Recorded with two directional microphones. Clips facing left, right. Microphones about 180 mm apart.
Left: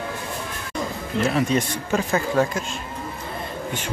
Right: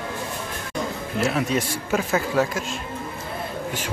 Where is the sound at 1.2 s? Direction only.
5° right (ahead or behind).